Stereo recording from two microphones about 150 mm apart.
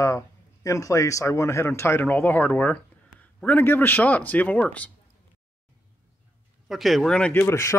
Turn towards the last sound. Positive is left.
turn(degrees=20)  # may be behind; listen again after turning